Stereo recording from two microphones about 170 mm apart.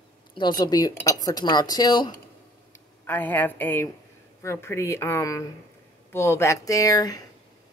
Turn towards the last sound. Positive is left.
turn(degrees=20)  # may be behind; listen again after turning